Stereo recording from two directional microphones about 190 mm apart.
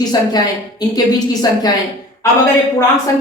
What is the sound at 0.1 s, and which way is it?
A woman's voice, 20° left (ahead or behind).